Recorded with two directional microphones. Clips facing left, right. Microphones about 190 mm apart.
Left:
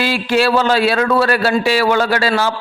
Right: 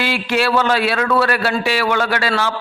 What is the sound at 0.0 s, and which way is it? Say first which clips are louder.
A man's voice: left 3 dB; 35° left (ahead or behind).